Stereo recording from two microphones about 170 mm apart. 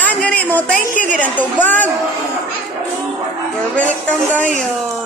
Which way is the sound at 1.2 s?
10° left (ahead or behind).